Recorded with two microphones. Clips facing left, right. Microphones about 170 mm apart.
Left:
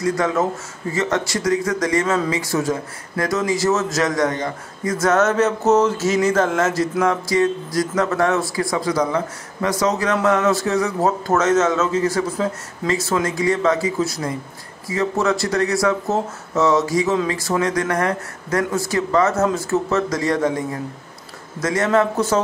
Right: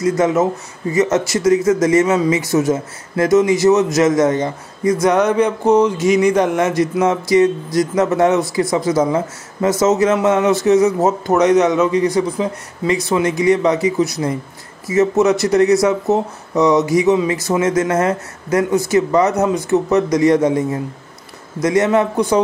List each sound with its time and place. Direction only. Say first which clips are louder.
0.0 s music: right 5 dB; 20° right (ahead or behind)
5.0 s speech: right 1 dB; 15° right (ahead or behind)
5.7 s music: right 4 dB; 10° right (ahead or behind)